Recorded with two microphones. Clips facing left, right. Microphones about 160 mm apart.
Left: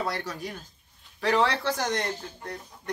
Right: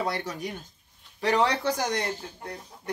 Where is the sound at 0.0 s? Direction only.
20° right (ahead or behind).